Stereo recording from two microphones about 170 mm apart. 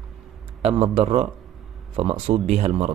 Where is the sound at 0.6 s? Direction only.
35° right (ahead or behind).